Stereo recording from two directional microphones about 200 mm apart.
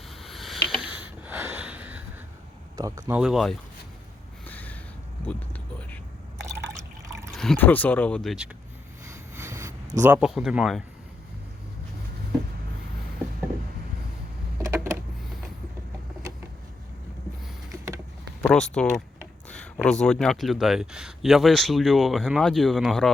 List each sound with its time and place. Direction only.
0.1 s a sound: centre (ahead or behind)
0.9 s snort: 5° right (ahead or behind)
2.7 s speech: 15° right (ahead or behind)
3.2 s speech: centre (ahead or behind)
4.4 s snort: 10° left (ahead or behind)
5.2 s a sound: 10° left (ahead or behind)
6.5 s water: 15° right (ahead or behind)
7.3 s speech: centre (ahead or behind)
9.0 s a sound: 10° right (ahead or behind)
10.0 s speech: 5° right (ahead or behind)
14.6 s a sound: 15° right (ahead or behind)
17.7 s vehicle: 15° right (ahead or behind)
18.4 s speech: 5° left (ahead or behind)